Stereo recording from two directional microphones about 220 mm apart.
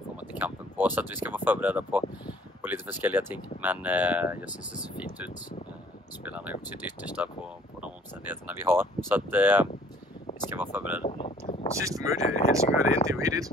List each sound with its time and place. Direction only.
0.2 s speech: 5° right (ahead or behind)
11.1 s a sound: 25° left (ahead or behind)
11.8 s speech: 15° right (ahead or behind)
12.2 s speech: 30° left (ahead or behind)
13.1 s speech: 15° right (ahead or behind)